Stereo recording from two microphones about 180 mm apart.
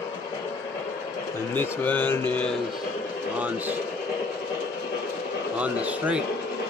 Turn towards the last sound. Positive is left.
turn(degrees=-5)  # may be behind; listen again after turning